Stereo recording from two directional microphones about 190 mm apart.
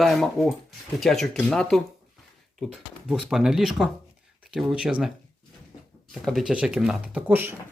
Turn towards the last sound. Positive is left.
turn(degrees=-10)  # may be behind; listen again after turning